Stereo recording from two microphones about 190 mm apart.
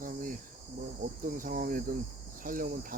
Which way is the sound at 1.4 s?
45° right (ahead or behind).